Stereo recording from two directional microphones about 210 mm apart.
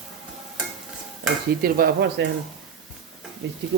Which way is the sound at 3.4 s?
55° right (ahead or behind).